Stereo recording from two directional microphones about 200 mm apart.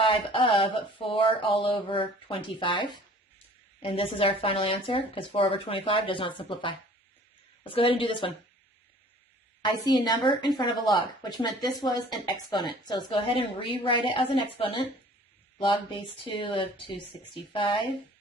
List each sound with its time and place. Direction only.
0.0 s speech: 25° left (ahead or behind)
9.6 s speech: 20° left (ahead or behind)